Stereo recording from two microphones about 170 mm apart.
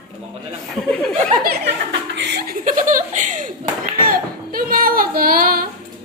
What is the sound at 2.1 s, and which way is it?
Speech, 80° right.